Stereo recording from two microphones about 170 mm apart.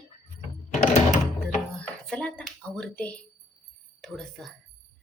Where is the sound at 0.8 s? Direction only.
45° left (ahead or behind).